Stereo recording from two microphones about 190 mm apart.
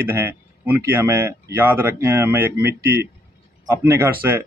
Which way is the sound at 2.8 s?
55° right (ahead or behind).